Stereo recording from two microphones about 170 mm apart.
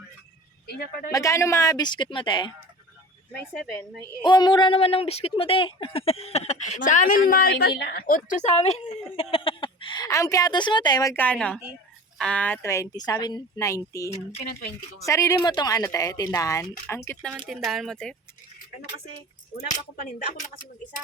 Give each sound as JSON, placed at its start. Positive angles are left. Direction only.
{"t": 1.1, "sound": "speech", "side_deg": 20}
{"t": 4.2, "sound": "speech", "side_deg": 25}
{"t": 9.3, "sound": "a sound", "side_deg": 30}
{"t": 11.1, "sound": "a woman's voice", "side_deg": 10}
{"t": 17.3, "sound": "speech", "side_deg": 0}